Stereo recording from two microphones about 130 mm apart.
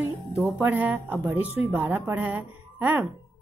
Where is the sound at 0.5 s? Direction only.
15° right (ahead or behind).